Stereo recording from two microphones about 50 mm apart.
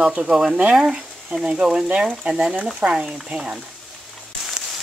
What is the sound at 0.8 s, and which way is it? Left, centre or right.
Speech, centre.